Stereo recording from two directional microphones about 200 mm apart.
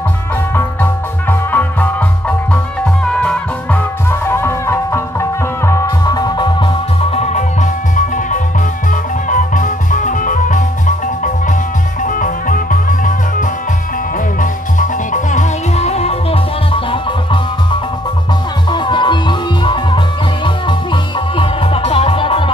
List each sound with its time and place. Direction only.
1.3 s music: 10° left (ahead or behind); by 10.6 s 40° left (ahead or behind)
12.1 s music: 40° left (ahead or behind); by 22.5 s 25° left (ahead or behind)